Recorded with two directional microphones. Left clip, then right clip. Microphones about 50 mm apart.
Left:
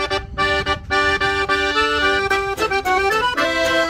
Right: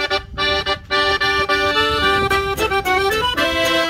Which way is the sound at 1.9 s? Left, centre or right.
Left.